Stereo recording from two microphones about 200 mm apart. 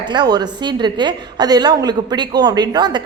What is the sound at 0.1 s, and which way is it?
A woman's voice, 20° right (ahead or behind).